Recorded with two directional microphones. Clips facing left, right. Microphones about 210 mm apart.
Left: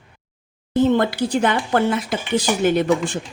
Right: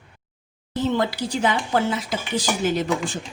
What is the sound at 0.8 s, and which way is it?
Speech, 55° left (ahead or behind).